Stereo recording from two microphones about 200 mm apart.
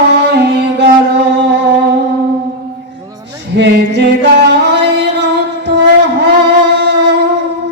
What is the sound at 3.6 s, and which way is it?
Music, 60° right (ahead or behind).